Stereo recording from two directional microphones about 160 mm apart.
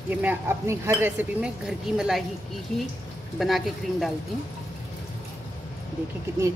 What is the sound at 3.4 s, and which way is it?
Speech, centre (ahead or behind).